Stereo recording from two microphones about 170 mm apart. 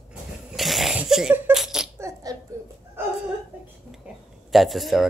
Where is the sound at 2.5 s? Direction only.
15° right (ahead or behind).